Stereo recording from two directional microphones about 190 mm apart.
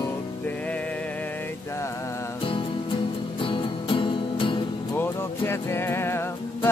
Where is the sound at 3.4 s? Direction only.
25° left (ahead or behind).